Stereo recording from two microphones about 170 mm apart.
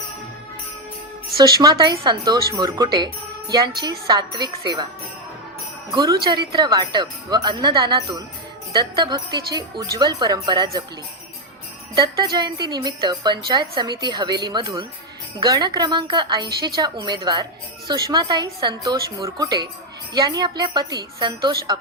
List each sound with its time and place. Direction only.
1.4 s speech: 20° right (ahead or behind)
5.9 s speech: 20° right (ahead or behind)
12.4 s speech: 25° right (ahead or behind)